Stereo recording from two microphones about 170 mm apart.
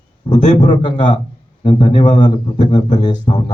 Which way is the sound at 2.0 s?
25° left (ahead or behind).